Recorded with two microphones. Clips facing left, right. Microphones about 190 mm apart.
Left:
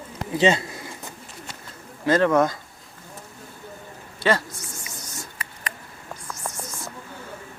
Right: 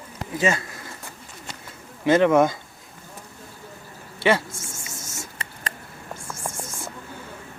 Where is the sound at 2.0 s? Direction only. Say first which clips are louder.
Right 2 dB; 25° right (ahead or behind).